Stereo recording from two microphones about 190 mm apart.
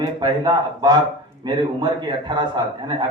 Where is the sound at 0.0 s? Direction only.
20° right (ahead or behind).